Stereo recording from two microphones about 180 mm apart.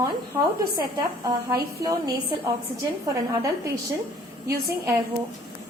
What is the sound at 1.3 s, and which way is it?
Speech, 20° right (ahead or behind).